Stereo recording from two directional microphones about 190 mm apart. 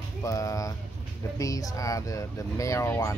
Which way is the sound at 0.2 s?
15° left (ahead or behind).